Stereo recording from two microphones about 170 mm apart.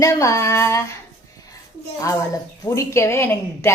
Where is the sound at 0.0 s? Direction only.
20° left (ahead or behind).